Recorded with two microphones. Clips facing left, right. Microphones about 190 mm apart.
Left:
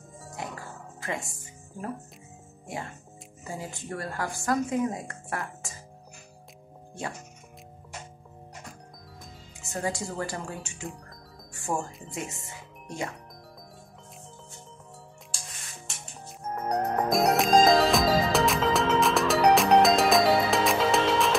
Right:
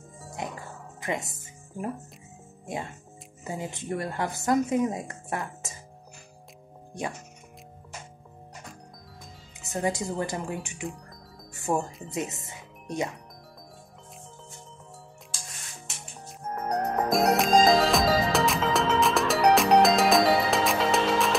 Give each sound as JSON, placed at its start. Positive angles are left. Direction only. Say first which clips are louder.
{"t": 0.4, "sound": "music", "louder": "right 2 dB", "side_deg": -20}
{"t": 1.0, "sound": "speech", "louder": "right 3 dB", "side_deg": -20}
{"t": 3.4, "sound": "speech", "louder": "right 4 dB", "side_deg": -20}
{"t": 9.7, "sound": "speech", "louder": "right 3 dB", "side_deg": -20}
{"t": 16.3, "sound": "music", "louder": "even", "side_deg": 0}